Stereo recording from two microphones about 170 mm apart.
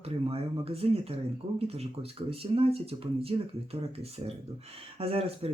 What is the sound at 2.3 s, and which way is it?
Speech, 35° right (ahead or behind).